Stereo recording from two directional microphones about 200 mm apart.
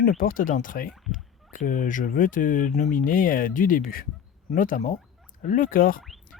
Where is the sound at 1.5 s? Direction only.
40° left (ahead or behind).